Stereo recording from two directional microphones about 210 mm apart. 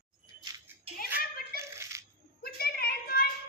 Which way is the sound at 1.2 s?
45° left (ahead or behind).